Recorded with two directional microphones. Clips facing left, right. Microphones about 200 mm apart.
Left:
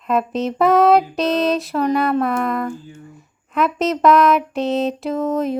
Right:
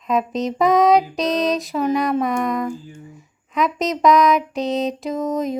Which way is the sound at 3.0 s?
Centre (ahead or behind).